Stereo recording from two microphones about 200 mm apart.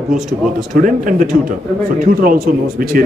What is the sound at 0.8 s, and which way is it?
Speech, 40° right (ahead or behind).